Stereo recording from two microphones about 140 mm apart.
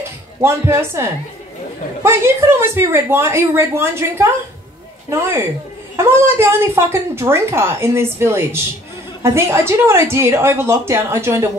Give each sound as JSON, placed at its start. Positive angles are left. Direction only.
{"t": 0.4, "sound": "a woman's voice", "side_deg": -20}